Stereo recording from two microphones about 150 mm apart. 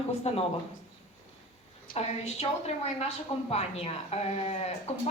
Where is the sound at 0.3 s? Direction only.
45° left (ahead or behind).